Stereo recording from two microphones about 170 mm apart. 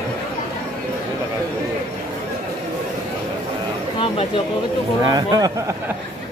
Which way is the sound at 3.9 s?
30° left (ahead or behind).